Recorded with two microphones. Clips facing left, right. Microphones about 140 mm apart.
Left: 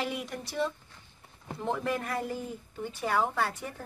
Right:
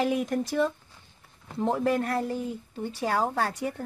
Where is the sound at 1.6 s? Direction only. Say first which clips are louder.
Right 6 dB; 35° right (ahead or behind).